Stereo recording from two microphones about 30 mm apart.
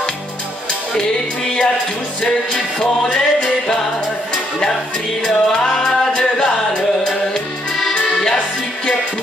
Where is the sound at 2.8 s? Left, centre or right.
Left.